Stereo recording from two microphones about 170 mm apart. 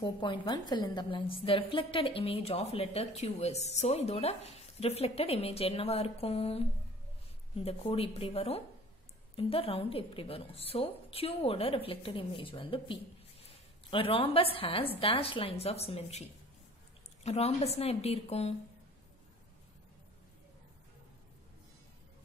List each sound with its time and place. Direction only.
0.0 s a woman's voice: 25° left (ahead or behind)
7.6 s a woman's voice: 35° left (ahead or behind)